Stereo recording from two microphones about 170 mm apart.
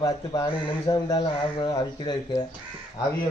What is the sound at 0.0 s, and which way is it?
A man's voice, 25° left (ahead or behind).